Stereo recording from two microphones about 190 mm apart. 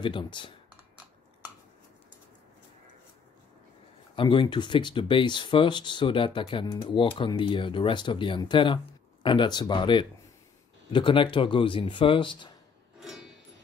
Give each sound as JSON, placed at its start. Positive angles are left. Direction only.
{"t": 0.0, "sound": "speech", "side_deg": 25}
{"t": 4.1, "sound": "speech", "side_deg": 25}
{"t": 13.0, "sound": "music", "side_deg": 0}